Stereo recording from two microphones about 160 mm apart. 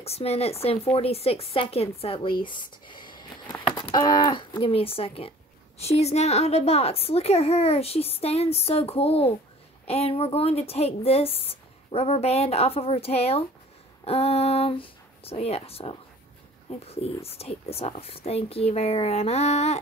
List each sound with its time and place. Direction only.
0.0 s a woman's voice: 40° left (ahead or behind)